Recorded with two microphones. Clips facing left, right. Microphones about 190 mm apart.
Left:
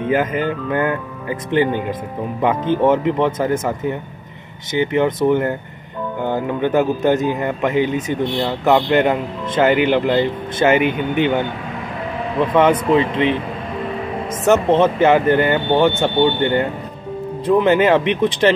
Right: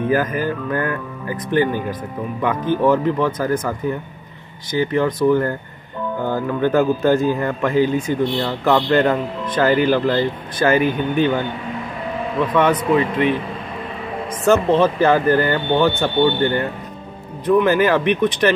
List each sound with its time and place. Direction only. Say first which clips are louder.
0.0 s a man's voice: left 1 dB; 25° left (ahead or behind)
4.7 s a man's voice: left 1 dB; 20° left (ahead or behind)
12.5 s a man's voice: left 2 dB; 25° left (ahead or behind)
14.4 s a man's voice: left 1 dB; 20° left (ahead or behind)